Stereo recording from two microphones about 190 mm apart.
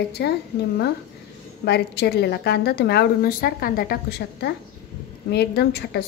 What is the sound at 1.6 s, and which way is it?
A woman's voice, 60° left (ahead or behind).